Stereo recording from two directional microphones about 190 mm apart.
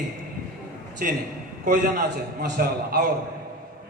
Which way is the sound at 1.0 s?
45° right (ahead or behind).